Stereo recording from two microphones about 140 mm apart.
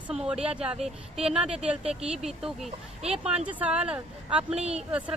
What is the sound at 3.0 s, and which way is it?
Speech, 50° right (ahead or behind).